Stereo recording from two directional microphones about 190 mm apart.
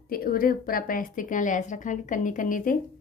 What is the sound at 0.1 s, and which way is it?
A woman's voice, 50° left (ahead or behind).